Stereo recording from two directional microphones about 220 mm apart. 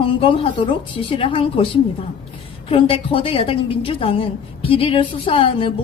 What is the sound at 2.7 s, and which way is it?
A woman's voice, 25° left (ahead or behind).